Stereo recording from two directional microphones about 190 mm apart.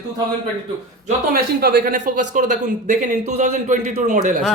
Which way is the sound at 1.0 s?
50° right (ahead or behind).